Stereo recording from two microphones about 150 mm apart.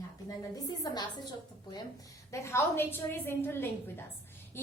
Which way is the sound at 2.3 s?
20° left (ahead or behind).